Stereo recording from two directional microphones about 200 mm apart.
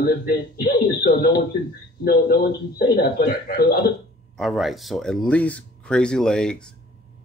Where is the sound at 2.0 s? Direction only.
50° left (ahead or behind).